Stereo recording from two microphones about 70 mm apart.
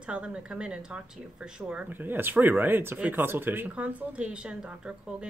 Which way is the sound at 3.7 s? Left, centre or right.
Centre.